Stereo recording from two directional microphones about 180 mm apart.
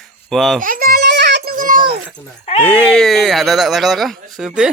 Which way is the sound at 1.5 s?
50° right (ahead or behind).